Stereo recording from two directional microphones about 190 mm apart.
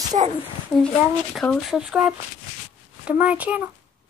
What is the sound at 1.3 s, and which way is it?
A child's voice, 5° left (ahead or behind).